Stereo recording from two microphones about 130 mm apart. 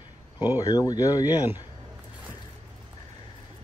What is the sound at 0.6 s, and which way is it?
Speech, 30° left (ahead or behind).